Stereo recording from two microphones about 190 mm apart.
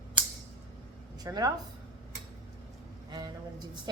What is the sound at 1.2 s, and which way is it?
Speech, 20° right (ahead or behind).